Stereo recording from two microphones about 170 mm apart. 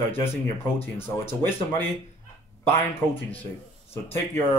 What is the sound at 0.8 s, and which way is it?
Speech, 15° left (ahead or behind).